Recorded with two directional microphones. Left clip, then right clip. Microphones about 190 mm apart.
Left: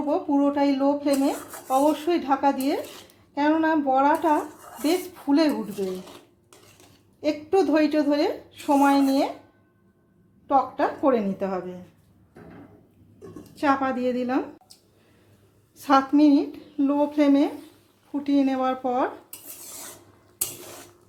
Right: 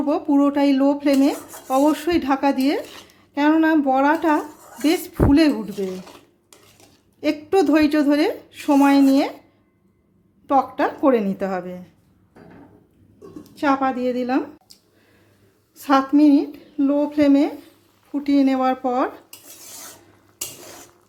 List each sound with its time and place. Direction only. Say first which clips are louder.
0.1 s speech: right 4 dB; 35° right (ahead or behind)
7.2 s speech: right 3 dB; 30° right (ahead or behind)
10.4 s a woman's voice: right 3 dB; 30° right (ahead or behind)
13.6 s a woman's voice: right 3 dB; 15° right (ahead or behind)
15.7 s a woman's voice: right 2 dB; 10° right (ahead or behind)